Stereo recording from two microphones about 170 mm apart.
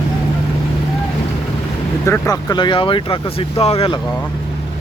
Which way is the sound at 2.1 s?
20° left (ahead or behind).